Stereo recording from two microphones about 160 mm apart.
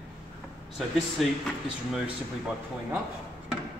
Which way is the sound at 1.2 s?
Centre (ahead or behind).